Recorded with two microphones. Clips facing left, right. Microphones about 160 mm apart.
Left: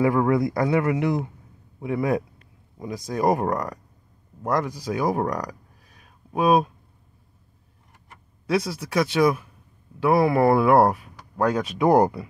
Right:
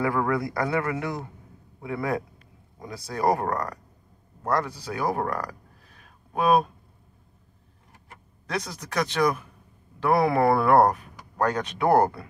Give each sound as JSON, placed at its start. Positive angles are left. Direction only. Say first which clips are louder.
{"t": 0.0, "sound": "speech", "louder": "left 5 dB", "side_deg": 20}
{"t": 8.5, "sound": "speech", "louder": "left 7 dB", "side_deg": 10}